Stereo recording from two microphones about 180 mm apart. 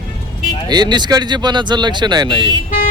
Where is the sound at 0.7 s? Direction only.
25° right (ahead or behind).